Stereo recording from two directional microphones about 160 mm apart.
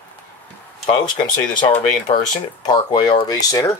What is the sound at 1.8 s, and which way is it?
Speech, 40° left (ahead or behind).